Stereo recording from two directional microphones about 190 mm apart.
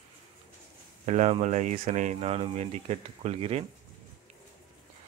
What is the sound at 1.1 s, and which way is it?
Speech, 35° right (ahead or behind).